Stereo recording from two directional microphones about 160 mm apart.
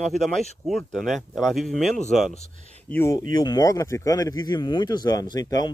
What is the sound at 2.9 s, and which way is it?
Speech, 15° left (ahead or behind).